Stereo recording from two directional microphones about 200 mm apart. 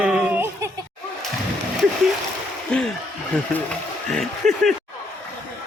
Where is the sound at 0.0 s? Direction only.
5° right (ahead or behind).